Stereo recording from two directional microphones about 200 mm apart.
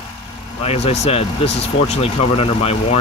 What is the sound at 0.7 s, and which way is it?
Speech, 30° left (ahead or behind).